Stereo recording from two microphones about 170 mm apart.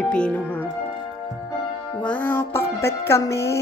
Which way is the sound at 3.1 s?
15° left (ahead or behind).